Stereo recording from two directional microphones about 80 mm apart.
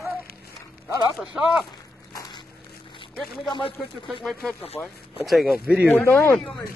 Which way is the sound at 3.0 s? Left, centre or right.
Left.